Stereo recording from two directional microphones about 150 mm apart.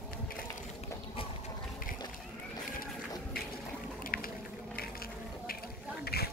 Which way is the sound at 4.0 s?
70° left (ahead or behind).